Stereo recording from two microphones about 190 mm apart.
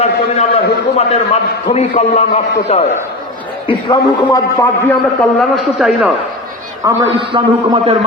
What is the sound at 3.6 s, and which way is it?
A man's voice, 20° left (ahead or behind).